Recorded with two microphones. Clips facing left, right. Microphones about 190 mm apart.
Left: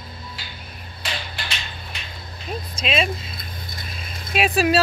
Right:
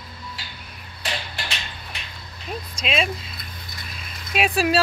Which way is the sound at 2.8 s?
Centre (ahead or behind).